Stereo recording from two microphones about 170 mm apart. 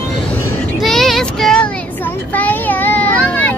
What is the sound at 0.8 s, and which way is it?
Child singing, centre (ahead or behind).